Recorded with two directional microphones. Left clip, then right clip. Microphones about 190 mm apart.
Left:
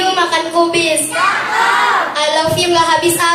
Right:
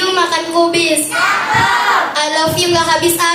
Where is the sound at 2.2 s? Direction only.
25° right (ahead or behind).